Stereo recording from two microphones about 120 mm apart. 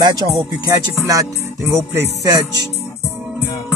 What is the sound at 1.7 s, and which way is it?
Music, 25° right (ahead or behind).